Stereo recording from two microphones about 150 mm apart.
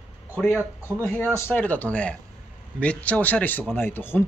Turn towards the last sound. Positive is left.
turn(degrees=15)  # may be behind; listen again after turning